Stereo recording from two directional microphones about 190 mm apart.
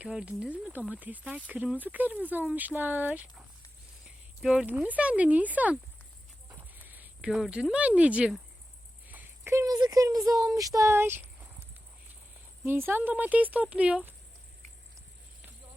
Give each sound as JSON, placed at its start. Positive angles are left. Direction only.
{"t": 0.0, "sound": "speech", "side_deg": -5}
{"t": 6.5, "sound": "a sound", "side_deg": -10}
{"t": 9.0, "sound": "speech", "side_deg": -10}
{"t": 12.6, "sound": "speech", "side_deg": -10}